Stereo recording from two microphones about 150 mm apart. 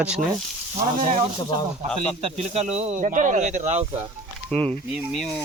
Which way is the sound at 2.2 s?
45° right (ahead or behind).